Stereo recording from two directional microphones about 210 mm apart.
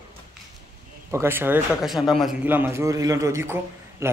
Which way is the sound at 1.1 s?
10° right (ahead or behind).